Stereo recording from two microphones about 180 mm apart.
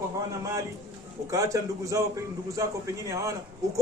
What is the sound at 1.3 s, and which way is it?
A man's voice, 20° right (ahead or behind).